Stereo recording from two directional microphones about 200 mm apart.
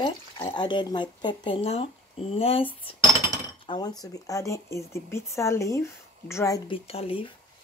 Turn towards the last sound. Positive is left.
turn(degrees=30)  # may be behind; listen again after turning